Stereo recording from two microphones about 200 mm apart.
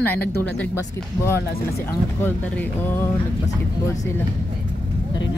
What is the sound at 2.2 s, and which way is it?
Speech, 10° left (ahead or behind).